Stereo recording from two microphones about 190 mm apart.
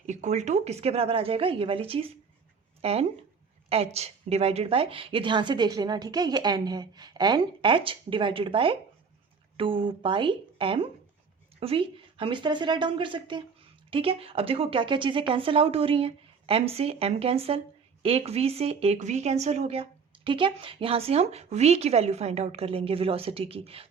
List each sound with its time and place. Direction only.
0.0 s a woman's voice: 40° right (ahead or behind)